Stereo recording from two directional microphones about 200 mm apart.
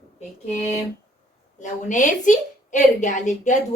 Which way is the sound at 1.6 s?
40° left (ahead or behind).